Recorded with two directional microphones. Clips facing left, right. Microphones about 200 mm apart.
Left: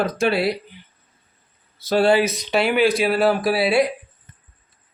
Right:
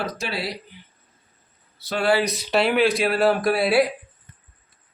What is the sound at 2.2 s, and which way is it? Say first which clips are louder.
Speech: left 1 dB; centre (ahead or behind).